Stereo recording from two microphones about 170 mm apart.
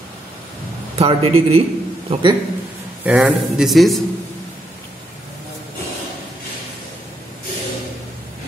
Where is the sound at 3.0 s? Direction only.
5° right (ahead or behind).